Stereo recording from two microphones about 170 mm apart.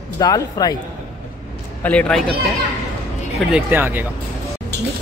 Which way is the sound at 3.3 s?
10° right (ahead or behind).